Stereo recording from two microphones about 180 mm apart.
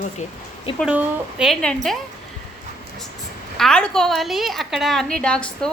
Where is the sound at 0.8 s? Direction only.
5° right (ahead or behind).